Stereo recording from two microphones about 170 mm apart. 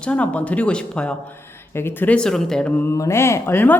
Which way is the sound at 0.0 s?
5° left (ahead or behind).